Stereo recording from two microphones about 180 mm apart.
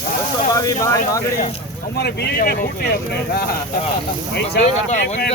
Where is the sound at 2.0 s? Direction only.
60° left (ahead or behind).